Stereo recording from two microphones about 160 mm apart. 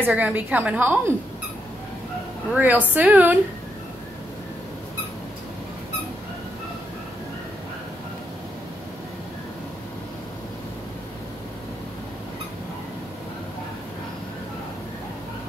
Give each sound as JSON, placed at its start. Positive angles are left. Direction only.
{"t": 0.0, "sound": "a woman's voice", "side_deg": -10}
{"t": 2.5, "sound": "a woman's voice", "side_deg": -10}